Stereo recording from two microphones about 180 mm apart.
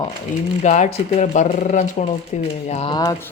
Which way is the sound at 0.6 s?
40° left (ahead or behind).